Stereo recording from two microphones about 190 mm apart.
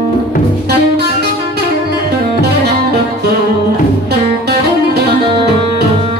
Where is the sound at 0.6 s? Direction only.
60° right (ahead or behind).